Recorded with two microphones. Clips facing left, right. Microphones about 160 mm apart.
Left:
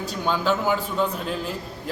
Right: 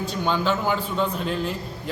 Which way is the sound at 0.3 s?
5° left (ahead or behind).